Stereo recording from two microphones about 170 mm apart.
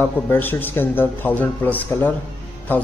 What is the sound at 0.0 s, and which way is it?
Speech, 10° left (ahead or behind).